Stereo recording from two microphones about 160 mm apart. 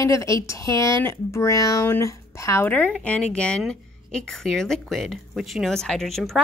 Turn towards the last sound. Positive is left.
turn(degrees=0)  # may be behind; listen again after turning